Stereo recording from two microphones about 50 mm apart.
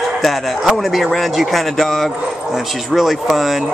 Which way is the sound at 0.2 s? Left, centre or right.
Centre.